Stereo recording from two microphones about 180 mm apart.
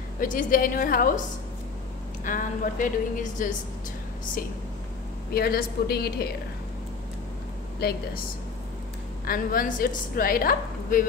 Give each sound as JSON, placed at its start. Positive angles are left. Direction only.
{"t": 0.2, "sound": "a woman's voice", "side_deg": 50}
{"t": 2.2, "sound": "a woman's voice", "side_deg": 45}
{"t": 5.3, "sound": "a woman's voice", "side_deg": 55}
{"t": 7.8, "sound": "a woman's voice", "side_deg": 60}
{"t": 9.2, "sound": "a woman's voice", "side_deg": 50}